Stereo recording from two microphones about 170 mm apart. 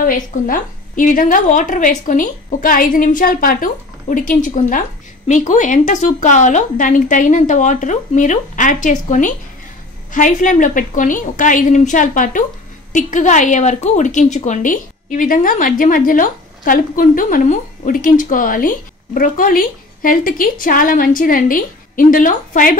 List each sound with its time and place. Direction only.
0.0 s a woman's voice: 55° left (ahead or behind)